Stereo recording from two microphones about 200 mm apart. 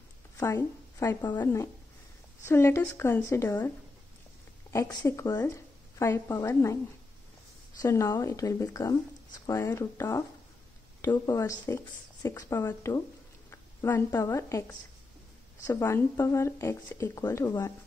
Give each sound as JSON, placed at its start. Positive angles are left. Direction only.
{"t": 0.4, "sound": "a woman's voice", "side_deg": 15}
{"t": 7.8, "sound": "speech", "side_deg": 15}